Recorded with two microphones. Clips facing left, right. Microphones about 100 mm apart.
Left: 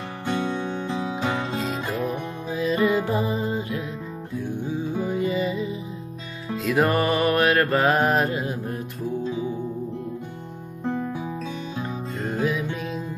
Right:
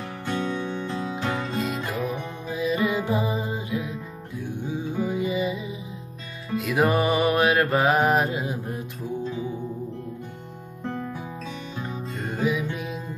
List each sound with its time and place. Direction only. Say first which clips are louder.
0.3 s music: left 2 dB; 10° left (ahead or behind)
2.5 s music: left 3 dB; 15° right (ahead or behind)
5.0 s music: even; 15° right (ahead or behind)
12.4 s music: even; 15° right (ahead or behind)